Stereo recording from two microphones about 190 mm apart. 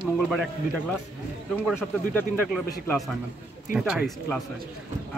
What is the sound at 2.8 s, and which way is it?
Speech, centre (ahead or behind).